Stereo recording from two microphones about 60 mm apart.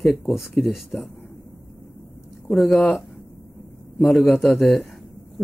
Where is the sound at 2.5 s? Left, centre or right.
Centre.